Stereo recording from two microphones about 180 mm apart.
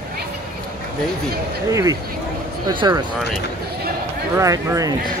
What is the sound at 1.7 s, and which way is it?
Speech, 20° right (ahead or behind).